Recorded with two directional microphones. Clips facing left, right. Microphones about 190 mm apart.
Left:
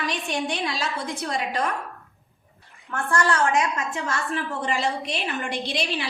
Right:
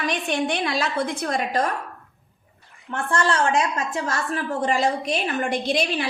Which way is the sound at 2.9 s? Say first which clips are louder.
Right 1 dB; 25° right (ahead or behind).